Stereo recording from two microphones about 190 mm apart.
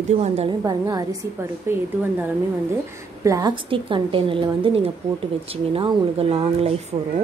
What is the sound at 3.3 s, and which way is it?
A woman's voice, 20° right (ahead or behind).